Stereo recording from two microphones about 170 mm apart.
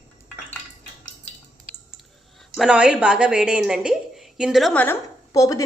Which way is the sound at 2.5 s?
5° right (ahead or behind).